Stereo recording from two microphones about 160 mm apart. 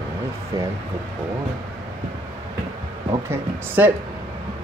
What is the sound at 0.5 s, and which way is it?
Speech, 25° right (ahead or behind).